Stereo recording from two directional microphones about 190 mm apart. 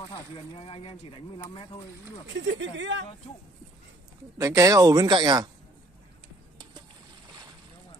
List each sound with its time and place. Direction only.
0.6 s speech: 30° left (ahead or behind)
2.2 s speech: 70° right (ahead or behind)
4.4 s speech: 15° right (ahead or behind)